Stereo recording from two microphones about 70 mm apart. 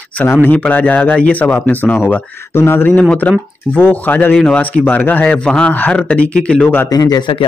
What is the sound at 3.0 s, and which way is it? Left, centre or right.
A man's voice, centre.